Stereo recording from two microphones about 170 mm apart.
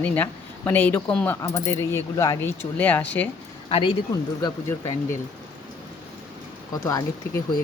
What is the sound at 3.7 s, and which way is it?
Speech, 35° left (ahead or behind).